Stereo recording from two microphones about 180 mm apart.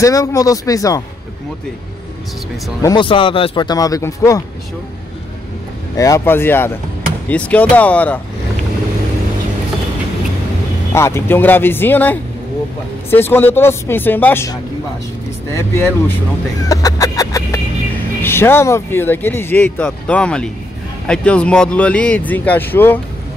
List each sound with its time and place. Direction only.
0.0 s speech: 20° left (ahead or behind)
2.8 s speech: 25° left (ahead or behind)
5.9 s speech: 20° left (ahead or behind)
10.9 s speech: 15° left (ahead or behind)
16.6 s music: 20° left (ahead or behind)
18.2 s speech: 15° left (ahead or behind)